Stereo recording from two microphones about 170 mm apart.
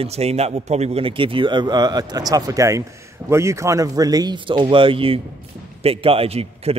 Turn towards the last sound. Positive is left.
turn(degrees=-35)  # may be behind; listen again after turning